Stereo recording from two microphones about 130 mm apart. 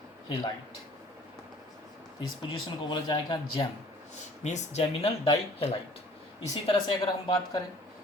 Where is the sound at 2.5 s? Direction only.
35° left (ahead or behind).